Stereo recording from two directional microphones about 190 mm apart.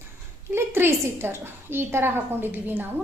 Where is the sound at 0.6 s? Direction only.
10° right (ahead or behind).